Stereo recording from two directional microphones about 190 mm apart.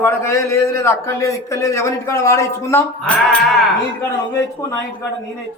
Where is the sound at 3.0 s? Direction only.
5° left (ahead or behind).